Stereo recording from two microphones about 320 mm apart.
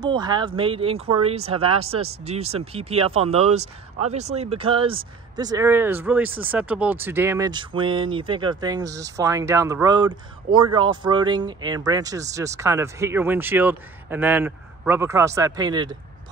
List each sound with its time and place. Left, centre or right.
0.0 s speech: centre